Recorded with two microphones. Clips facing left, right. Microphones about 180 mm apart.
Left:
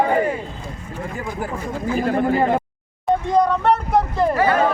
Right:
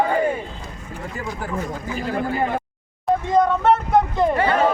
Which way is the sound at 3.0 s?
Centre (ahead or behind).